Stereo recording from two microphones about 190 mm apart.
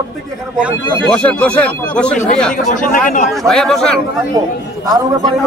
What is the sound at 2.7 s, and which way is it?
Speech, 45° left (ahead or behind).